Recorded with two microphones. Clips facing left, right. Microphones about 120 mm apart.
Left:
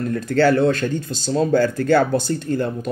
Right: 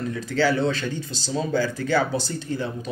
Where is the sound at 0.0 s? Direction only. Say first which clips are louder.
Left 6 dB; 55° left (ahead or behind).